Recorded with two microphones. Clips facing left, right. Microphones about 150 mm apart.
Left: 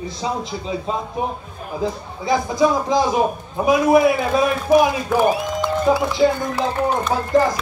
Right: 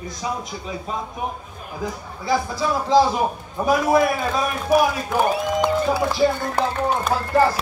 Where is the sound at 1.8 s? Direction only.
20° left (ahead or behind).